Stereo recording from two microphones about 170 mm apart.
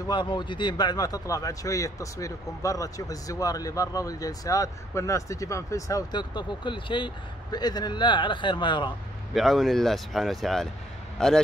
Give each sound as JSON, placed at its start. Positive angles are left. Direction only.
{"t": 0.1, "sound": "speech", "side_deg": 25}
{"t": 9.3, "sound": "speech", "side_deg": 0}